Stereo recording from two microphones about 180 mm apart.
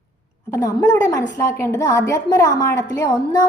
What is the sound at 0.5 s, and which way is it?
A woman's voice, 20° left (ahead or behind).